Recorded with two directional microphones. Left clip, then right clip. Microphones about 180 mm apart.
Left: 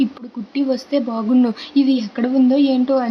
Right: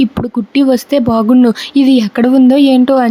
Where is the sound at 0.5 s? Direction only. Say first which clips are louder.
Right 8 dB; 45° right (ahead or behind).